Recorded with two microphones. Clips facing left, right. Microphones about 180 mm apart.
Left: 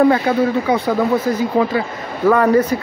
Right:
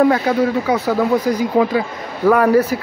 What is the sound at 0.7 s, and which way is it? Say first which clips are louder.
Speech: even; 10° right (ahead or behind).